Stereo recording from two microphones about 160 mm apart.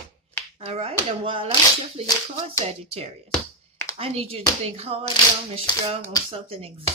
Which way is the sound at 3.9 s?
40° right (ahead or behind).